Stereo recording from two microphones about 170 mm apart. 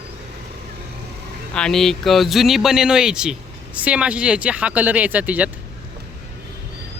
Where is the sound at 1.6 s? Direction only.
5° left (ahead or behind).